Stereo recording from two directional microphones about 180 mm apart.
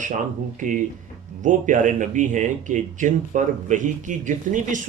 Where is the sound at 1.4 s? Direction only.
45° right (ahead or behind).